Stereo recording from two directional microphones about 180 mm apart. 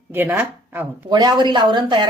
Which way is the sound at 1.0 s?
25° right (ahead or behind).